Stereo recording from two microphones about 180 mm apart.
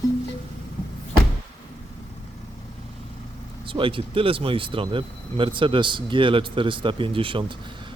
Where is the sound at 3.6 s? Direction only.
30° right (ahead or behind).